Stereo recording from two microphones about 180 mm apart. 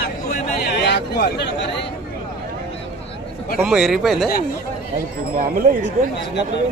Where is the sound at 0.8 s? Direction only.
65° left (ahead or behind).